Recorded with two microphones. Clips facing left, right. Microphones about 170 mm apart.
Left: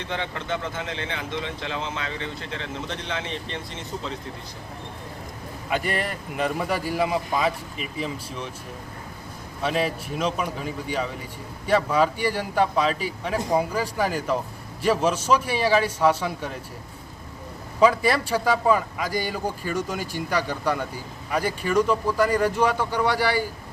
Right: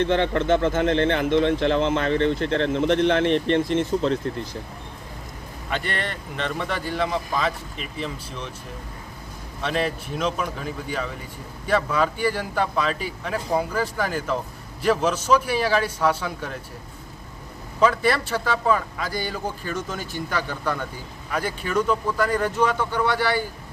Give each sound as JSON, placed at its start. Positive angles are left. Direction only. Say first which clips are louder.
{"t": 0.0, "sound": "speech", "louder": "right 10 dB", "side_deg": -60}
{"t": 5.7, "sound": "a man's voice", "louder": "left 2 dB", "side_deg": 5}
{"t": 9.6, "sound": "a man's voice", "louder": "even", "side_deg": 5}
{"t": 17.7, "sound": "a man's voice", "louder": "left 1 dB", "side_deg": 10}
{"t": 21.2, "sound": "a man's voice", "louder": "left 2 dB", "side_deg": 5}